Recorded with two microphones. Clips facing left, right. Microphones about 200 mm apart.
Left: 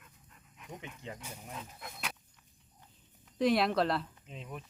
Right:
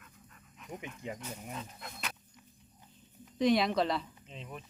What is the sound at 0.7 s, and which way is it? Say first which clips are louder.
Speech: right 3 dB; 10° right (ahead or behind).